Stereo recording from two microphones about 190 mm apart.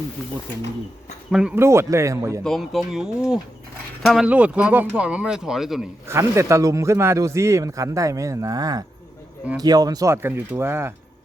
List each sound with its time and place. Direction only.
1.3 s a man's voice: 5° right (ahead or behind)
2.4 s speech: centre (ahead or behind)
6.1 s a man's voice: 15° right (ahead or behind)